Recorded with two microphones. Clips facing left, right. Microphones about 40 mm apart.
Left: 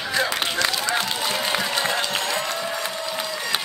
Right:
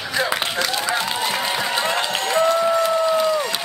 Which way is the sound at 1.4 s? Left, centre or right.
Centre.